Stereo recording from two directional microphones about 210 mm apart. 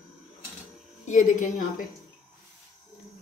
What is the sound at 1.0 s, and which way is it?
Speech, 35° left (ahead or behind).